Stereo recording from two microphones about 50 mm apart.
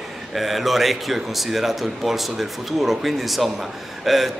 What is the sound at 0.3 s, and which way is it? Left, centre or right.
A man's voice, centre.